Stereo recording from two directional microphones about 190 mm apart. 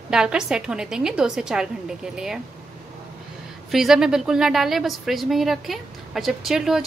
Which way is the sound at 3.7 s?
Centre (ahead or behind).